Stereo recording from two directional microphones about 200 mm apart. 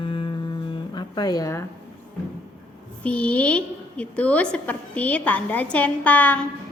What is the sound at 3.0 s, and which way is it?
A woman's voice, 5° left (ahead or behind).